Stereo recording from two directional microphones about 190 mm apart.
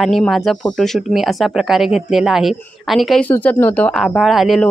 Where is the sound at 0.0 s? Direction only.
Centre (ahead or behind).